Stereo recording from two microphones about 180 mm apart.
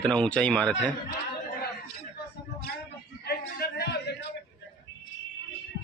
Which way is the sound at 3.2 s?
60° left (ahead or behind).